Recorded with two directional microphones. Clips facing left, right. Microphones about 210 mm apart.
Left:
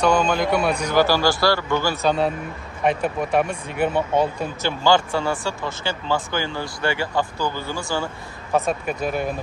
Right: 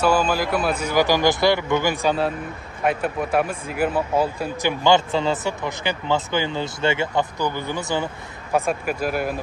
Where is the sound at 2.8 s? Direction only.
Centre (ahead or behind).